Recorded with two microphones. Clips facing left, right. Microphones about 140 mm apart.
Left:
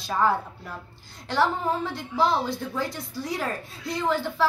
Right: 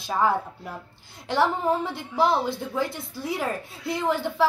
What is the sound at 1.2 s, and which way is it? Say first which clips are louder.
A woman's voice: right 1 dB; 20° right (ahead or behind).